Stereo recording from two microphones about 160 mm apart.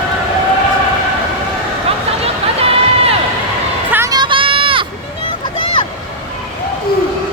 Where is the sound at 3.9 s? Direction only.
20° right (ahead or behind).